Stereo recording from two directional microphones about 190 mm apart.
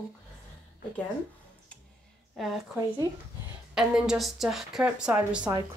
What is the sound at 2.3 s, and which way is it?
Speech, centre (ahead or behind).